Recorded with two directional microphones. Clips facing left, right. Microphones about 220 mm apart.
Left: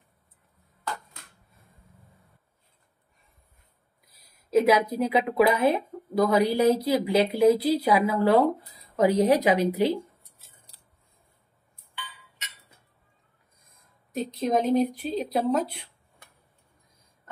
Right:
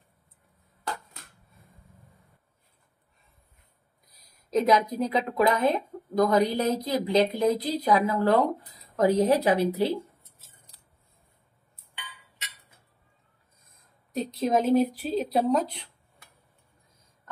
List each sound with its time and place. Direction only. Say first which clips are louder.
4.5 s speech: left 2 dB; 5° left (ahead or behind)
14.1 s a woman's voice: even; 5° right (ahead or behind)